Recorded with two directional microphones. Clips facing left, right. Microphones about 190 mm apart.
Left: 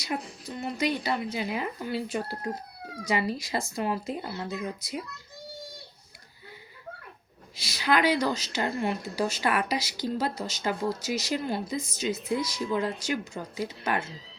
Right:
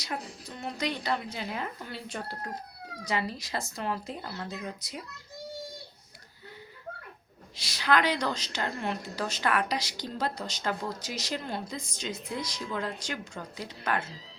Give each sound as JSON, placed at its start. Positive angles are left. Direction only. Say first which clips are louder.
{"t": 0.0, "sound": "speech", "louder": "left 4 dB", "side_deg": 5}
{"t": 7.5, "sound": "speech", "louder": "left 1 dB", "side_deg": 10}